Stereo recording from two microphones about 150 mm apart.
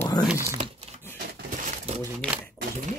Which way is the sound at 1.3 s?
60° right (ahead or behind).